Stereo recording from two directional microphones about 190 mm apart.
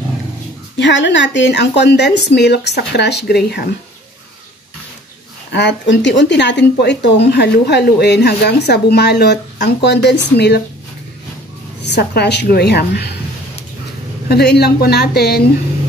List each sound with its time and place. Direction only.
0.7 s speech: 65° left (ahead or behind)
5.5 s speech: 65° left (ahead or behind)
11.8 s speech: 60° left (ahead or behind)
14.3 s speech: 60° left (ahead or behind)